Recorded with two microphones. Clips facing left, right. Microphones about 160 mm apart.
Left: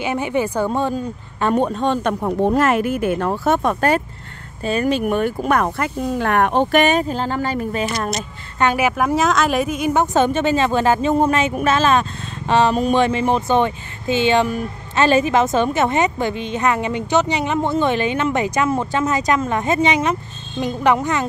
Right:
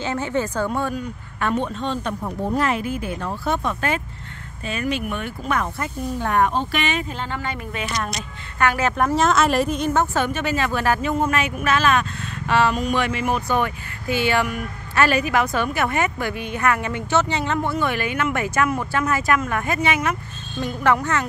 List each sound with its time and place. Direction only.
0.0 s speech: 15° left (ahead or behind)
0.7 s speech: 25° left (ahead or behind)
1.5 s speech: 45° left (ahead or behind)
2.0 s speech: 80° left; by 4.0 s 45° left (ahead or behind)
4.6 s speech: 35° left (ahead or behind)
5.4 s speech: 60° left (ahead or behind)
6.8 s speech: 40° left (ahead or behind)
8.5 s speech: 20° left (ahead or behind)
8.8 s speech: 5° left (ahead or behind)